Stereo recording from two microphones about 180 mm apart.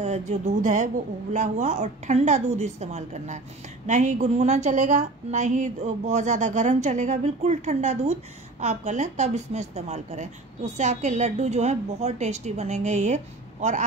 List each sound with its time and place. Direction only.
0.0 s a woman's voice: 40° right (ahead or behind)